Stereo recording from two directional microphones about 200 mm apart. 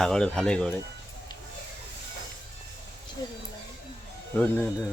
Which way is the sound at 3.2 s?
20° left (ahead or behind).